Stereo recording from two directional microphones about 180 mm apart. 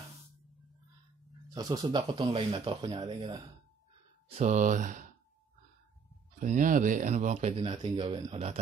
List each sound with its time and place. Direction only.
1.5 s speech: 20° right (ahead or behind)
4.3 s speech: 40° right (ahead or behind)
6.4 s speech: 45° right (ahead or behind)
7.8 s speech: 25° right (ahead or behind)